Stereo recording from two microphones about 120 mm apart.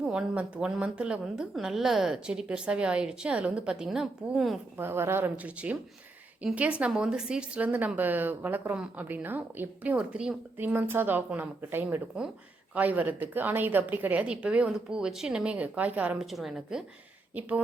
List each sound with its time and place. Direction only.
0.0 s speech: 5° right (ahead or behind)
4.8 s speech: 20° right (ahead or behind)
16.1 s a woman's voice: centre (ahead or behind)